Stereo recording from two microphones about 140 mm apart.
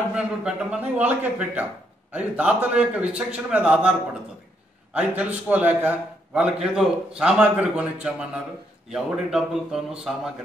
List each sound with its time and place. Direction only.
0.1 s a man's voice: 5° right (ahead or behind)
4.9 s a man's voice: 10° right (ahead or behind)